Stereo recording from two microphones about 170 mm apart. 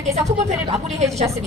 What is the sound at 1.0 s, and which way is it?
Speech, 40° right (ahead or behind).